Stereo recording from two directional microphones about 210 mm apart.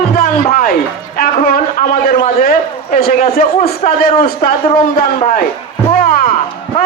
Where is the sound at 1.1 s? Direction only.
45° left (ahead or behind).